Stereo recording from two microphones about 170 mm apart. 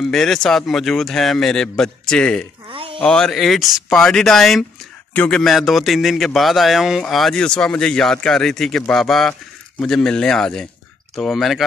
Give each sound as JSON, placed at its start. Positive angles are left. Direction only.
{"t": 0.0, "sound": "a man's voice", "side_deg": 0}
{"t": 2.7, "sound": "a sound", "side_deg": -30}
{"t": 3.0, "sound": "a man's voice", "side_deg": 5}